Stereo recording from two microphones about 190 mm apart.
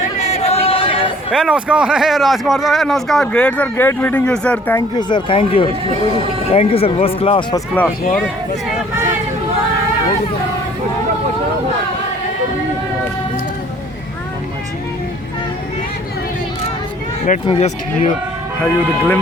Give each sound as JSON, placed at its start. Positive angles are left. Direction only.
{"t": 0.2, "sound": "music", "side_deg": 35}
{"t": 1.3, "sound": "speech", "side_deg": -5}
{"t": 4.9, "sound": "speech", "side_deg": 25}
{"t": 17.4, "sound": "speech", "side_deg": 30}
{"t": 18.6, "sound": "speech", "side_deg": 10}